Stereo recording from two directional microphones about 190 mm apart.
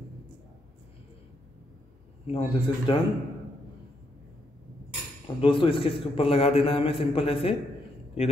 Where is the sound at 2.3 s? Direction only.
30° left (ahead or behind).